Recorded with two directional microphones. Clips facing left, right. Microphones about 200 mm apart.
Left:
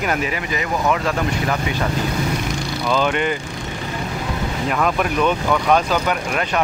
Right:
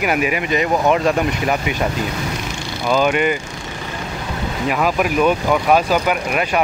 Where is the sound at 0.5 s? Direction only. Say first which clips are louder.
Right 5 dB; 20° right (ahead or behind).